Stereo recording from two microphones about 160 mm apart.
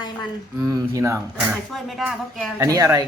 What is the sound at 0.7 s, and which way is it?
Speech, 20° right (ahead or behind).